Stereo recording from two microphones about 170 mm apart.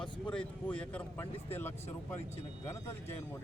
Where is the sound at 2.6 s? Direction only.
15° left (ahead or behind).